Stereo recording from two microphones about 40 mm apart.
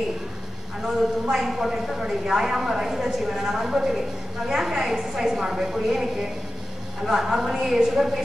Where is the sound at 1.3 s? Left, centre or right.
Centre.